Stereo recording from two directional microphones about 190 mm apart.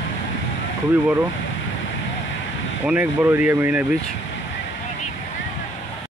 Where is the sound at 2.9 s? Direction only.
10° right (ahead or behind).